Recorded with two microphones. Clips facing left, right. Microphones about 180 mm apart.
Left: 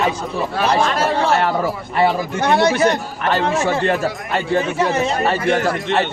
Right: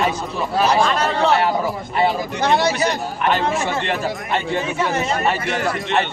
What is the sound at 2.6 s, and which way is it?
Speech, 50° left (ahead or behind).